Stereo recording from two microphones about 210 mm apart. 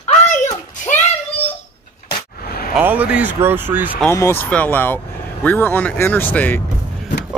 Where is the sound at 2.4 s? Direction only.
45° left (ahead or behind).